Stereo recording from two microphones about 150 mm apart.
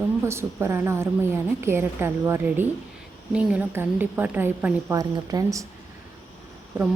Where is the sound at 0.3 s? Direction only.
15° right (ahead or behind).